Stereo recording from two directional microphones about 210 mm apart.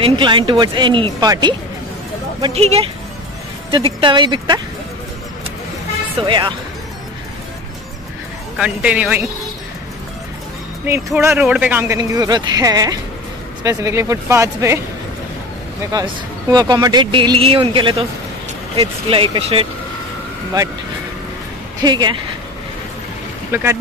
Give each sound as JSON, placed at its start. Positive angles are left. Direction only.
{"t": 0.0, "sound": "speech", "side_deg": -20}
{"t": 6.2, "sound": "speech", "side_deg": -20}
{"t": 8.5, "sound": "a man's voice", "side_deg": -5}
{"t": 10.9, "sound": "speech", "side_deg": -10}
{"t": 15.9, "sound": "speech", "side_deg": -15}
{"t": 21.8, "sound": "speech", "side_deg": -20}
{"t": 23.5, "sound": "speech", "side_deg": -10}